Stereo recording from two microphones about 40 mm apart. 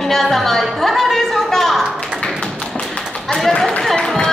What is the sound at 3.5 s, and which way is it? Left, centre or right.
Speech, centre.